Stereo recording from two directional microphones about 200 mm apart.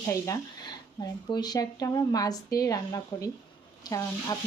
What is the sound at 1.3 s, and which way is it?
Speech, 20° left (ahead or behind).